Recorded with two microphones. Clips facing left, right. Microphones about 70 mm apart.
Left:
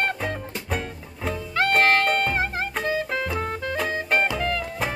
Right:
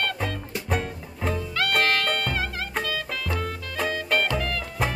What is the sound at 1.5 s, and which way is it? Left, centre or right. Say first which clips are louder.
Music: left 5 dB; left.